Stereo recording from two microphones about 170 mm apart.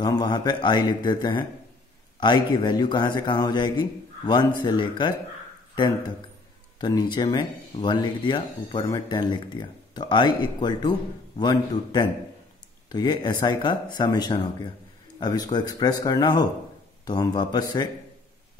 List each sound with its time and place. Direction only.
0.0 s speech: 25° left (ahead or behind)
6.8 s speech: 25° left (ahead or behind)